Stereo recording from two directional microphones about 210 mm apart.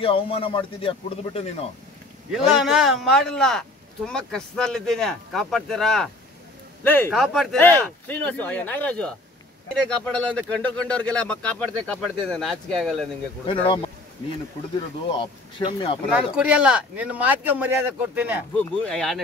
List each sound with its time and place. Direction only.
0.0 s a man's voice: 25° left (ahead or behind)
2.3 s a man's voice: 5° right (ahead or behind)
13.5 s a man's voice: 25° left (ahead or behind)
15.0 s a man's voice: 25° left (ahead or behind)
16.1 s speech: 5° right (ahead or behind)
18.6 s a man's voice: 5° left (ahead or behind)